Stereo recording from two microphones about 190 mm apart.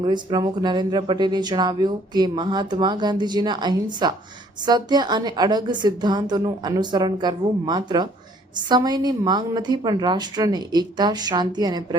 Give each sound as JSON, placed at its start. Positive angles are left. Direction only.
{"t": 0.0, "sound": "speech", "side_deg": -25}